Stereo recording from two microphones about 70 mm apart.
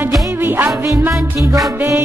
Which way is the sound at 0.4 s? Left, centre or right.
Right.